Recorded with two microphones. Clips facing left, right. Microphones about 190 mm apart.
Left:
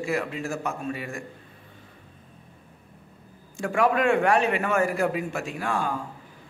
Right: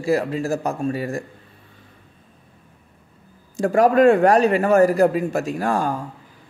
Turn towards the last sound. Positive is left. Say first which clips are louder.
# right 7 dB
turn(degrees=-40)  # may be behind; listen again after turning